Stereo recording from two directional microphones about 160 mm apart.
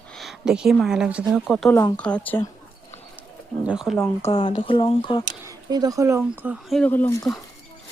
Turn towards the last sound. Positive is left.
turn(degrees=15)  # may be behind; listen again after turning